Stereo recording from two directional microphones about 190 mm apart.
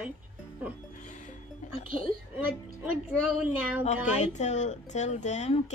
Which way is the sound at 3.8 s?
35° left (ahead or behind).